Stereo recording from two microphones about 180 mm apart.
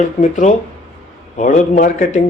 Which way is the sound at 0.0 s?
45° left (ahead or behind).